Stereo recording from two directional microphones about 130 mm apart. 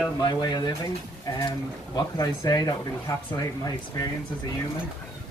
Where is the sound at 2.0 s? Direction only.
30° left (ahead or behind).